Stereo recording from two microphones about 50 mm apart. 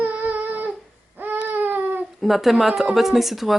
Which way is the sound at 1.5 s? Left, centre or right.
Right.